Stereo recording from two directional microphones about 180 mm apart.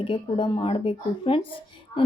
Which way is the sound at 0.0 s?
30° left (ahead or behind).